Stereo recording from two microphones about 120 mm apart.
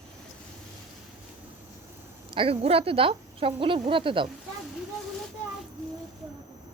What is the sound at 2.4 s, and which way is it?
Speech, 55° right (ahead or behind).